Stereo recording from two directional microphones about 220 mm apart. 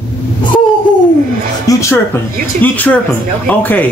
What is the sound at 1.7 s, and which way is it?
Music, 15° left (ahead or behind).